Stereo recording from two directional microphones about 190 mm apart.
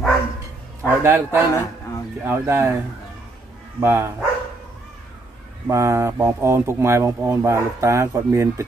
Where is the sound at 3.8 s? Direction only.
15° right (ahead or behind).